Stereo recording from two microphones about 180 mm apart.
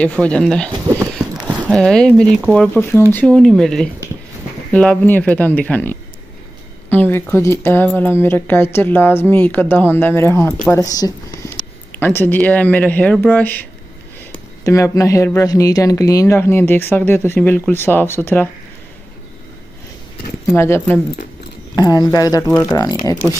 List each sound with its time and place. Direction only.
0.0 s speech: 5° left (ahead or behind)
1.1 s a sound: 5° right (ahead or behind)
1.7 s speech: 5° left (ahead or behind)
20.4 s speech: 15° left (ahead or behind)